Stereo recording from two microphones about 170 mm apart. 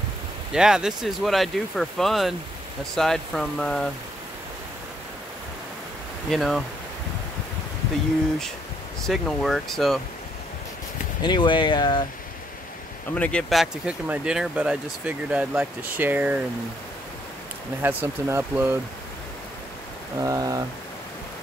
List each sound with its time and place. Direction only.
0.5 s speech: 5° right (ahead or behind)
6.3 s speech: centre (ahead or behind)
9.0 s speech: centre (ahead or behind)
11.2 s speech: 25° left (ahead or behind)
13.1 s speech: 5° left (ahead or behind); by 16.4 s 10° right (ahead or behind)
17.8 s speech: 15° right (ahead or behind)
20.2 s speech: 20° right (ahead or behind)